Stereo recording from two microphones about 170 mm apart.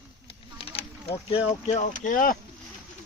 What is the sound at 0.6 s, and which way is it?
Speech, 35° left (ahead or behind).